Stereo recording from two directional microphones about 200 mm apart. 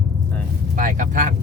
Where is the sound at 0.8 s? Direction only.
40° right (ahead or behind).